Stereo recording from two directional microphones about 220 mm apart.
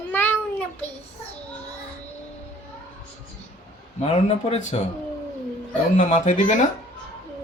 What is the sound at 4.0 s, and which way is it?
Speech, 25° left (ahead or behind).